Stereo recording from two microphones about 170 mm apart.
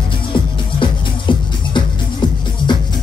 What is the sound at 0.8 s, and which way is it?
Music, 30° left (ahead or behind).